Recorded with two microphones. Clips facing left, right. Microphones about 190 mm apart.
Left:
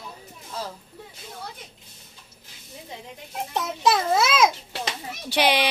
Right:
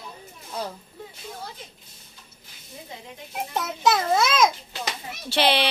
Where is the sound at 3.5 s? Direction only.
Centre (ahead or behind).